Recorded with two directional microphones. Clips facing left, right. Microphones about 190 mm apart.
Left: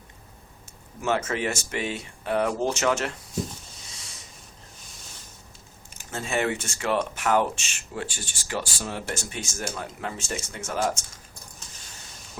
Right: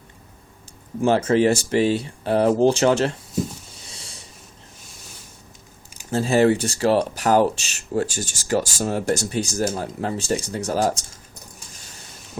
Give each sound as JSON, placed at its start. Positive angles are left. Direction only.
{"t": 1.0, "sound": "speech", "side_deg": -30}
{"t": 3.8, "sound": "a sound", "side_deg": -30}
{"t": 6.1, "sound": "speech", "side_deg": -35}